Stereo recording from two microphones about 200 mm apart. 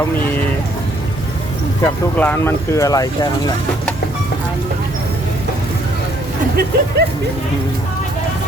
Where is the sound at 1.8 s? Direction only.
10° left (ahead or behind).